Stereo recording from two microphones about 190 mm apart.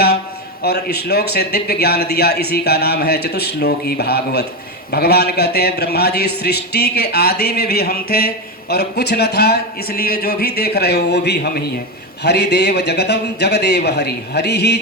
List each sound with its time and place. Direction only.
0.6 s a man's voice: 55° left (ahead or behind)